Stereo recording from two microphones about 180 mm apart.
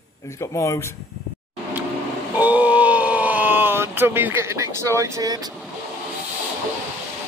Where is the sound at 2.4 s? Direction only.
10° right (ahead or behind).